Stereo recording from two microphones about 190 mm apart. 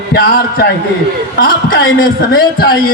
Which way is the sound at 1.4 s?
50° left (ahead or behind).